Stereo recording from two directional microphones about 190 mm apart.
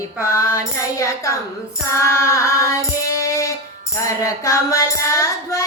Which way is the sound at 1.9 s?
15° left (ahead or behind).